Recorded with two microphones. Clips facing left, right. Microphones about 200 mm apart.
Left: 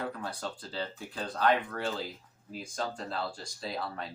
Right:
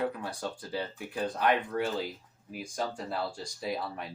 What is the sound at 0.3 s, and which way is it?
Speech, 15° right (ahead or behind).